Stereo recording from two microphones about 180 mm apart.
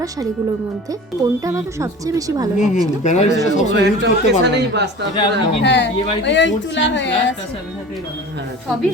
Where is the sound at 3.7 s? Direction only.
70° right (ahead or behind).